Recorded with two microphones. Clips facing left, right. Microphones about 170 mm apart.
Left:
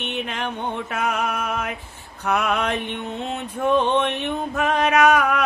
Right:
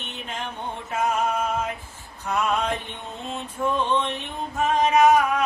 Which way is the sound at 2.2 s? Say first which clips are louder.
Left 2 dB; 65° left (ahead or behind).